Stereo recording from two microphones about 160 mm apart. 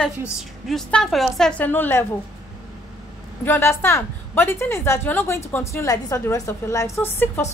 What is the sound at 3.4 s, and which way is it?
A woman's voice, 15° left (ahead or behind).